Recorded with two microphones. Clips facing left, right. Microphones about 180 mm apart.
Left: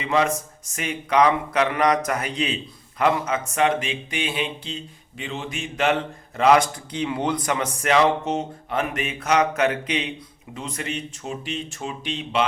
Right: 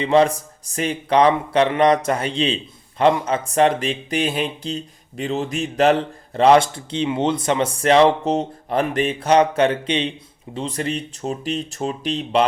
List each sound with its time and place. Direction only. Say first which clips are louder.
0.0 s a man's voice: right 6 dB; 30° right (ahead or behind)